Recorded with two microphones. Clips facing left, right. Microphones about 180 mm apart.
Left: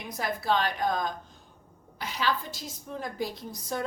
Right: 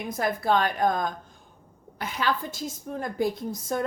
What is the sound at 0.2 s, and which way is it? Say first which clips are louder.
A woman's voice: right 3 dB; 50° right (ahead or behind).